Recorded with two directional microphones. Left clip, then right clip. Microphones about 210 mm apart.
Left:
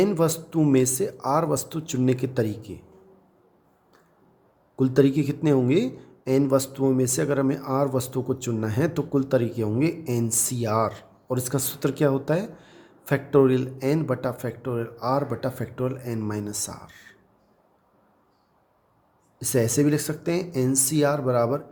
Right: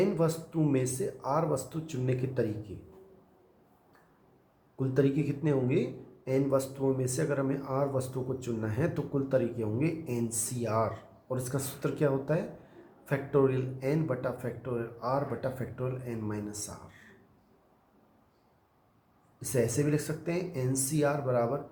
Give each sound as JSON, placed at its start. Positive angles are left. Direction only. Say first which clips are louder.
{"t": 0.0, "sound": "a man's voice", "louder": "left 6 dB", "side_deg": 55}
{"t": 4.8, "sound": "a man's voice", "louder": "left 8 dB", "side_deg": 55}
{"t": 19.4, "sound": "a man's voice", "louder": "left 7 dB", "side_deg": 55}